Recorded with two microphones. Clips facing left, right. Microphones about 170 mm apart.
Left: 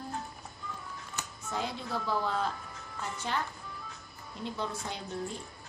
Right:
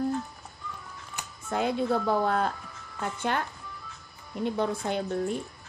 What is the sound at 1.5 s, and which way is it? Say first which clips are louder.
Speech: right 9 dB; 55° right (ahead or behind).